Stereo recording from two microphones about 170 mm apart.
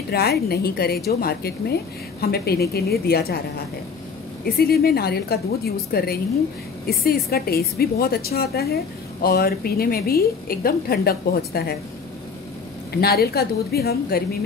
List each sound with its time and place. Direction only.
0.1 s a woman's voice: 65° left (ahead or behind)
4.5 s a woman's voice: 60° left (ahead or behind)
12.9 s a woman's voice: 65° left (ahead or behind)